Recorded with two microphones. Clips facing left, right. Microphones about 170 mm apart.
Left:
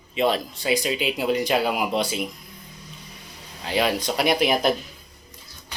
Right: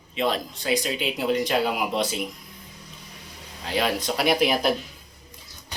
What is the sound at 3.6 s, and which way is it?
Speech, centre (ahead or behind).